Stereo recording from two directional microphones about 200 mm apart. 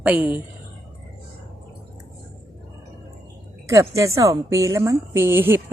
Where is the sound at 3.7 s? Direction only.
15° right (ahead or behind).